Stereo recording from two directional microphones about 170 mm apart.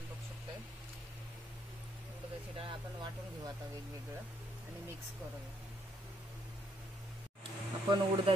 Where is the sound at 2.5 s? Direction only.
30° right (ahead or behind).